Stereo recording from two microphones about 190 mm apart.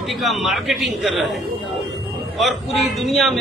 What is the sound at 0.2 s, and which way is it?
A man's voice, centre (ahead or behind).